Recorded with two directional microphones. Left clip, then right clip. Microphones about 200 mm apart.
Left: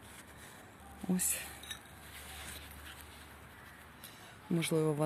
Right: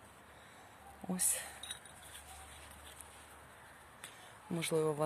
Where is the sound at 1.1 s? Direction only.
Centre (ahead or behind).